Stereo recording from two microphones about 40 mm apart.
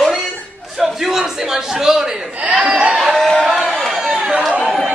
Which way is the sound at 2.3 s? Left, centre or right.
Right.